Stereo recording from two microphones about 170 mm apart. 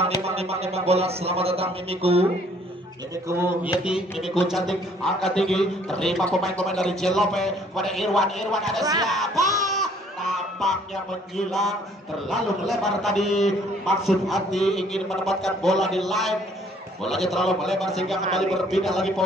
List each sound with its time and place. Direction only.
0.0 s a man's voice: 35° right (ahead or behind)
3.3 s a man's voice: 10° right (ahead or behind)
11.3 s a man's voice: centre (ahead or behind)